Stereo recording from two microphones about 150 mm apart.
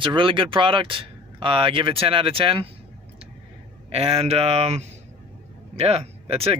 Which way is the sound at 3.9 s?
40° right (ahead or behind).